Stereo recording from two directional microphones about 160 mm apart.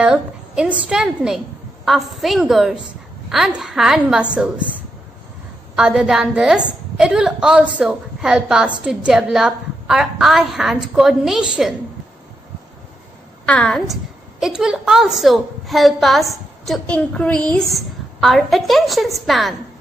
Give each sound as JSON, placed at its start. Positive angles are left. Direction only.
{"t": 0.0, "sound": "a woman's voice", "side_deg": -5}
{"t": 13.5, "sound": "a woman's voice", "side_deg": 5}